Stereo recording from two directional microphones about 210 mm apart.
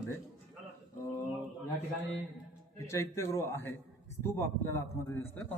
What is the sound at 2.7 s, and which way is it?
A man's voice, 15° left (ahead or behind).